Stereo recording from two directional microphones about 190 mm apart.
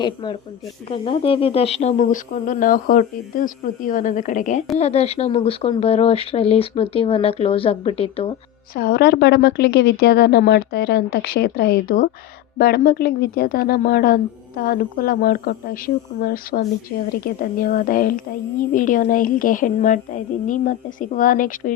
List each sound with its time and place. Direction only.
0.0 s speech: 25° left (ahead or behind)
8.7 s a woman's voice: 55° left (ahead or behind)